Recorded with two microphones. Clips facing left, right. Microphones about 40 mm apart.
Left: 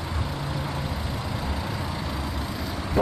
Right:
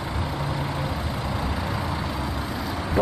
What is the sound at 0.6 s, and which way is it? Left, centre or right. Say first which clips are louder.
Vehicle: right 3 dB; centre.